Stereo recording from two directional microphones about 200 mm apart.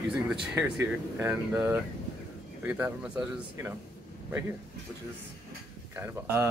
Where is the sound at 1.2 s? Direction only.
10° right (ahead or behind).